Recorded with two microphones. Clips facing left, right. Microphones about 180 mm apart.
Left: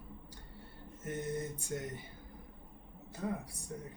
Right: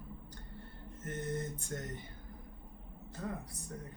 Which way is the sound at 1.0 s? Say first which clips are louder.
Left 1 dB; 10° left (ahead or behind).